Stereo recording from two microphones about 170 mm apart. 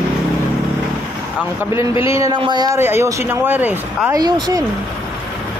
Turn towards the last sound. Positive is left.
turn(degrees=-20)  # may be behind; listen again after turning